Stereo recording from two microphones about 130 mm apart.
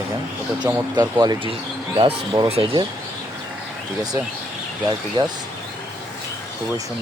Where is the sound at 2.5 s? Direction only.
50° right (ahead or behind).